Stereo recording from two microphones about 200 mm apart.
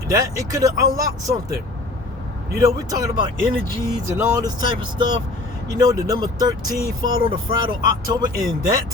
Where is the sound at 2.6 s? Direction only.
15° right (ahead or behind).